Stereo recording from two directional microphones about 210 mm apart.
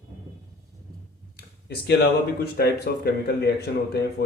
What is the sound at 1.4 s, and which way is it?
Speech, 50° left (ahead or behind).